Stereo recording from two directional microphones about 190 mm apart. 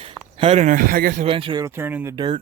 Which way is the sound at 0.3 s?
30° right (ahead or behind).